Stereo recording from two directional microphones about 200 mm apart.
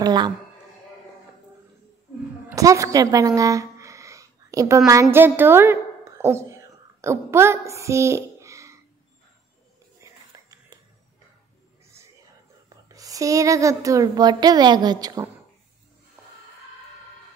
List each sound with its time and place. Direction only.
0.0 s speech: 20° right (ahead or behind)
2.5 s a woman's voice: 15° right (ahead or behind)
10.0 s whispering: 15° right (ahead or behind)
12.6 s speech: 15° right (ahead or behind)